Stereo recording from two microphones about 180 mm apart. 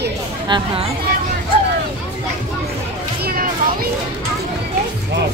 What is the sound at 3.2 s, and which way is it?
Children playing, 55° right (ahead or behind).